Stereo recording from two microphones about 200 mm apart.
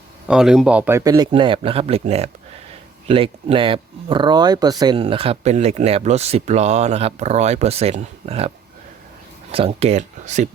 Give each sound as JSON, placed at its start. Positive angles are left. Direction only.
{"t": 0.3, "sound": "a man's voice", "side_deg": -5}